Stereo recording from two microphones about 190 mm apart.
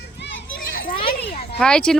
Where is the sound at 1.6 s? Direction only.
5° left (ahead or behind).